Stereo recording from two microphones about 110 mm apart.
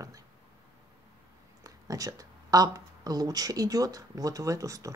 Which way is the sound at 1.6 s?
30° right (ahead or behind).